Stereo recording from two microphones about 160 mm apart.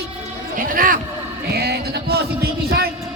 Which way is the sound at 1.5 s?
90° right.